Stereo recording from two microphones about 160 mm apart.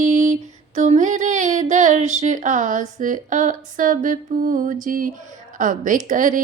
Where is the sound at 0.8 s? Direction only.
50° right (ahead or behind).